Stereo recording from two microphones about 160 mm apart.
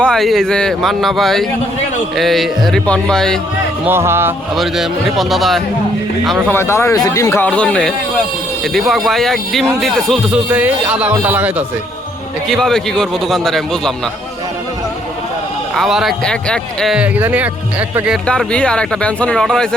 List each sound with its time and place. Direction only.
0.0 s speech: 5° left (ahead or behind)
3.8 s a man's voice: 15° right (ahead or behind)
4.5 s speech: centre (ahead or behind)
6.5 s a man's voice: 15° left (ahead or behind); by 11.6 s 10° right (ahead or behind)
12.5 s speech: centre (ahead or behind)
15.7 s speech: centre (ahead or behind)
18.3 s speech: 5° left (ahead or behind)